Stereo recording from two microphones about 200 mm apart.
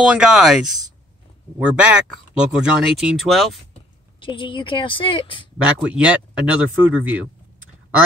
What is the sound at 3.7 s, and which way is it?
Speech, 25° left (ahead or behind).